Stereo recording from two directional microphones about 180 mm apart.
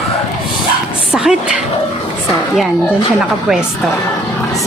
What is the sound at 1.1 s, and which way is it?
Speech, 5° right (ahead or behind).